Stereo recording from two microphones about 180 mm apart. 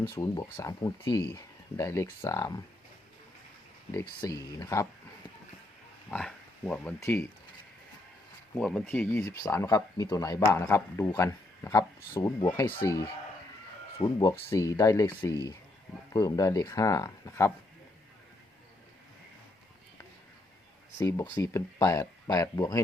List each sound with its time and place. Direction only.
0.0 s speech: 15° left (ahead or behind)
4.5 s speech: 15° left (ahead or behind)
6.1 s speech: 5° left (ahead or behind)
7.0 s speech: 15° left (ahead or behind)
8.5 s speech: 5° left (ahead or behind)
21.0 s speech: 15° left (ahead or behind)